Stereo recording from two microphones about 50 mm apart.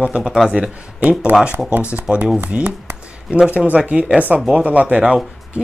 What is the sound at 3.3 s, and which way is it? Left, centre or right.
Speech, right.